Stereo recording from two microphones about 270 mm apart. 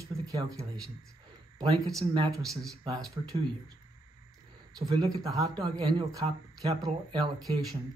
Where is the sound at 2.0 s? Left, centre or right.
Centre.